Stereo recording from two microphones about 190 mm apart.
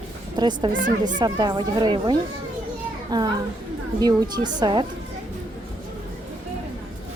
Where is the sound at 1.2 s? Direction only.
20° right (ahead or behind).